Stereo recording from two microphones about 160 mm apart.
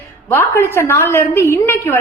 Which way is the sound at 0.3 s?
15° left (ahead or behind).